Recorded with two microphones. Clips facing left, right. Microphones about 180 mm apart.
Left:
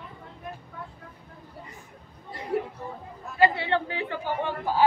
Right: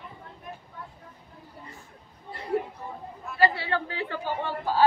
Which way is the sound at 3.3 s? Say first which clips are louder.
Left 2 dB; 20° left (ahead or behind).